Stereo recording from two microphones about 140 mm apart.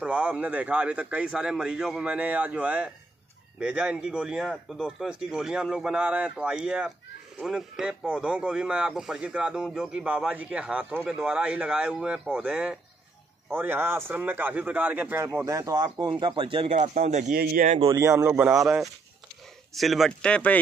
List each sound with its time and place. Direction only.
0.0 s a man's voice: 10° right (ahead or behind); by 16.6 s 35° right (ahead or behind)
16.6 s a man's voice: 55° right (ahead or behind); by 17.7 s 75° right (ahead or behind)
17.9 s a man's voice: 20° right (ahead or behind)
19.7 s speech: centre (ahead or behind)